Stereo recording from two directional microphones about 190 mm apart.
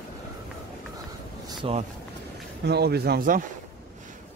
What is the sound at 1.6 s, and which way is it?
Speech, 35° right (ahead or behind).